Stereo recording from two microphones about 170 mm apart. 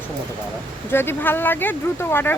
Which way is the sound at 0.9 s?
15° left (ahead or behind).